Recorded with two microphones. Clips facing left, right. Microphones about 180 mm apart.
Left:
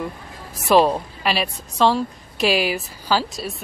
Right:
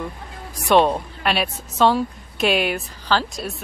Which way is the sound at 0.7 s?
Centre (ahead or behind).